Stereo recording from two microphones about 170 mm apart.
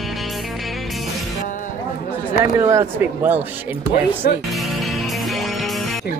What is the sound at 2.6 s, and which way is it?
Speech, 15° right (ahead or behind).